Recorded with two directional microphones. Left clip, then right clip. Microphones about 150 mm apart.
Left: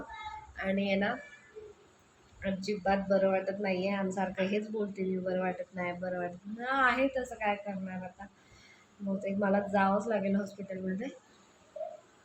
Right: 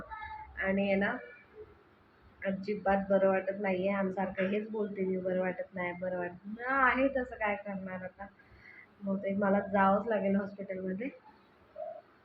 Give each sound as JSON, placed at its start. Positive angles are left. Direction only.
{"t": 0.5, "sound": "a woman's voice", "side_deg": 20}
{"t": 2.4, "sound": "a woman's voice", "side_deg": 20}
{"t": 9.0, "sound": "a woman's voice", "side_deg": 15}